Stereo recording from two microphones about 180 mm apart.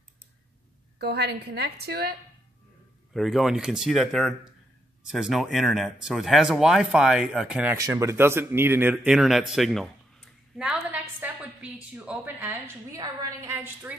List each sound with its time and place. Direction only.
0.9 s a woman's voice: 65° right (ahead or behind)
3.1 s speech: centre (ahead or behind)
7.7 s speech: 15° right (ahead or behind)